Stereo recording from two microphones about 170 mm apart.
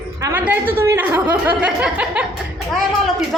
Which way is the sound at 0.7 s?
15° right (ahead or behind).